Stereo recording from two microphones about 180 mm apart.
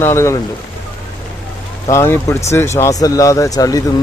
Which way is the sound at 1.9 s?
15° left (ahead or behind).